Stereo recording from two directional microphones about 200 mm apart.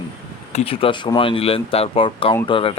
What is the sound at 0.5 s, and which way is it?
Speech, 30° left (ahead or behind).